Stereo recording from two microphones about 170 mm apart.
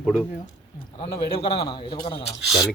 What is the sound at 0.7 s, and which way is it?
A man's voice, 30° left (ahead or behind).